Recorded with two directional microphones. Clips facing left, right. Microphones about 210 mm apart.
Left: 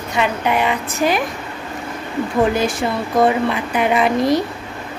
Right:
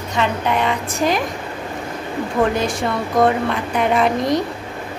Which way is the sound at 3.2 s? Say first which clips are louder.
Left 1 dB; 5° left (ahead or behind).